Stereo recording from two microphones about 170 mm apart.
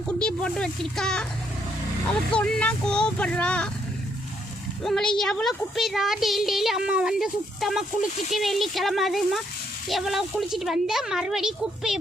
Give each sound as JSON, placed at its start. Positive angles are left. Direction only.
{"t": 0.2, "sound": "speech", "side_deg": 5}
{"t": 2.4, "sound": "speech", "side_deg": 5}
{"t": 4.8, "sound": "speech", "side_deg": 5}